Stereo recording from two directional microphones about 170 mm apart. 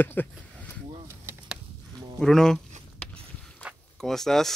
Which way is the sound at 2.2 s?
5° left (ahead or behind).